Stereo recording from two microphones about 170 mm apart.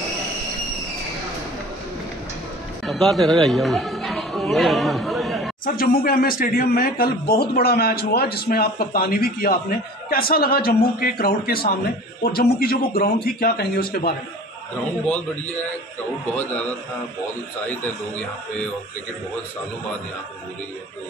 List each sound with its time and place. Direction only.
2.8 s chatter: centre (ahead or behind)
5.7 s speech: 60° left (ahead or behind)